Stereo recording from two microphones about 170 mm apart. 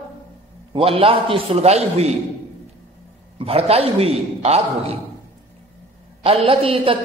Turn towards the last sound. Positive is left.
turn(degrees=-35)  # may be behind; listen again after turning